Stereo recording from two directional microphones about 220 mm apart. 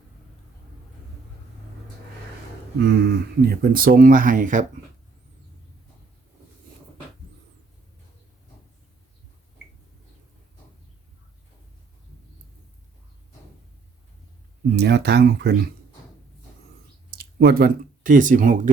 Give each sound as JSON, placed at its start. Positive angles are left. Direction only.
{"t": 2.7, "sound": "speech", "side_deg": -50}
{"t": 14.8, "sound": "speech", "side_deg": -50}
{"t": 17.1, "sound": "speech", "side_deg": -40}